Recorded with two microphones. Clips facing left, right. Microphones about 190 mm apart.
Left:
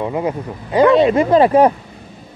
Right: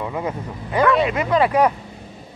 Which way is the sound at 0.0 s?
25° left (ahead or behind).